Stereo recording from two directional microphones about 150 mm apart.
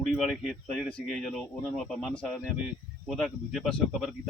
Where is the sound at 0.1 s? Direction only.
Centre (ahead or behind).